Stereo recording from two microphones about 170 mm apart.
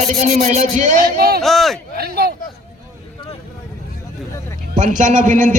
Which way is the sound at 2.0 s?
65° right (ahead or behind).